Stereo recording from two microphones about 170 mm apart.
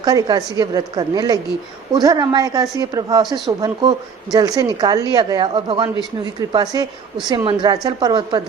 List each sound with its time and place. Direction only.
0.0 s a woman's voice: 20° right (ahead or behind)
3.2 s speech: centre (ahead or behind)
3.6 s a woman's voice: 25° right (ahead or behind)